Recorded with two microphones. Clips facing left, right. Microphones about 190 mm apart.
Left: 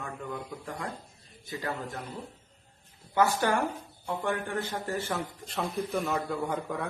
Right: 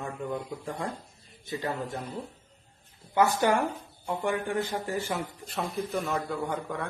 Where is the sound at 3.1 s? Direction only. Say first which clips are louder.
Right 2 dB; 15° right (ahead or behind).